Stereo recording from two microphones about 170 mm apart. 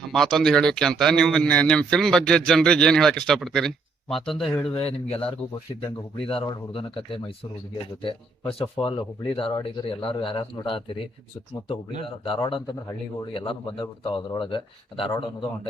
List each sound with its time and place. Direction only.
0.1 s a man's voice: 5° left (ahead or behind)
4.7 s speech: 35° left (ahead or behind)